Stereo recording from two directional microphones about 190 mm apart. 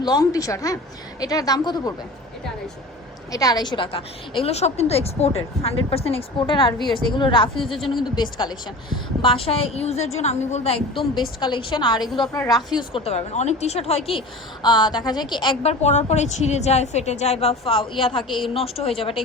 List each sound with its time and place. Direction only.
0.0 s a woman's voice: 20° left (ahead or behind)
3.3 s a woman's voice: 20° left (ahead or behind)
7.6 s speech: centre (ahead or behind)
8.1 s a woman's voice: 20° left (ahead or behind)
11.3 s a woman's voice: 25° left (ahead or behind)
11.9 s speech: centre (ahead or behind)
12.3 s a woman's voice: 20° left (ahead or behind)
18.2 s speech: centre (ahead or behind)
18.5 s a woman's voice: 30° left (ahead or behind)